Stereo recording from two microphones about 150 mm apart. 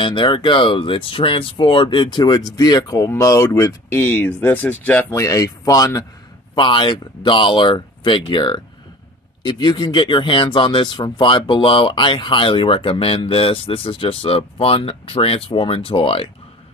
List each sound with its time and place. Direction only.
0.0 s speech: 35° left (ahead or behind); by 5.2 s 10° left (ahead or behind)
5.2 s speech: 25° left (ahead or behind); by 16.3 s 40° left (ahead or behind)